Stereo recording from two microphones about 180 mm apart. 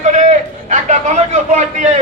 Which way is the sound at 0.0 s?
45° right (ahead or behind).